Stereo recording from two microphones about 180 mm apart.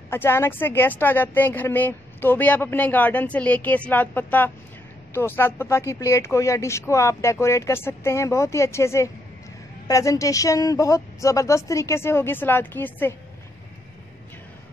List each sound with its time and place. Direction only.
0.1 s speech: 15° left (ahead or behind)